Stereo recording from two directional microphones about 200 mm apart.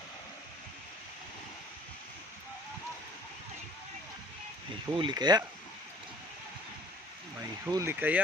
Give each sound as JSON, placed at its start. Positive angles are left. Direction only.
{"t": 4.9, "sound": "speech", "side_deg": -20}
{"t": 7.6, "sound": "speech", "side_deg": -15}